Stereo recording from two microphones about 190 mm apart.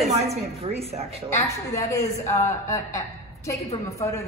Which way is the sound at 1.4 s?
15° left (ahead or behind).